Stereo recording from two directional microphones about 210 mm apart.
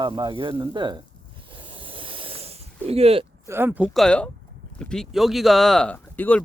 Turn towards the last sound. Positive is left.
turn(degrees=10)  # may be behind; listen again after turning